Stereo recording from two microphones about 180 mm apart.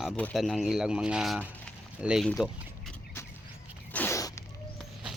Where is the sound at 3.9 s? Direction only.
15° left (ahead or behind).